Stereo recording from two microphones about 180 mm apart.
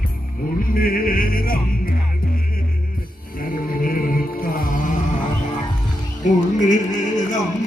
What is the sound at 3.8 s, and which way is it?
Music, 50° left (ahead or behind).